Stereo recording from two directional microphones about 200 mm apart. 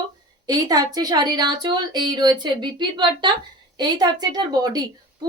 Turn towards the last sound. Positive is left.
turn(degrees=-20)  # may be behind; listen again after turning